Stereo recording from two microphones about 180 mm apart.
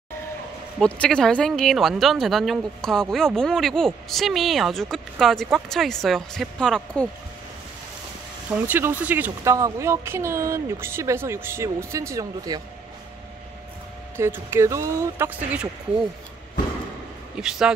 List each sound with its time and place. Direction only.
0.7 s speech: 5° left (ahead or behind)
8.6 s speech: 10° right (ahead or behind)
14.1 s speech: 15° right (ahead or behind)
17.4 s speech: 5° right (ahead or behind)